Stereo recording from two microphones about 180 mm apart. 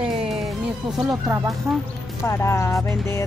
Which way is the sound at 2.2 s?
15° left (ahead or behind).